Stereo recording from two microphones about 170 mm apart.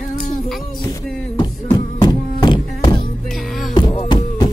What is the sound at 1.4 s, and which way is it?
Music, 25° left (ahead or behind).